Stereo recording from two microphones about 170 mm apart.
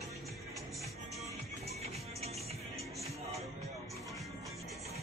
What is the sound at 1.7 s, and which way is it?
Music, 40° right (ahead or behind).